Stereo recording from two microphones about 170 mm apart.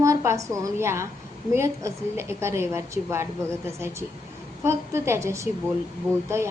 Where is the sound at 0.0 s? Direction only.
15° right (ahead or behind).